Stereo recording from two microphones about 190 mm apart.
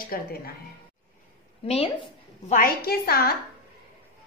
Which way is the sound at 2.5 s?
50° left (ahead or behind).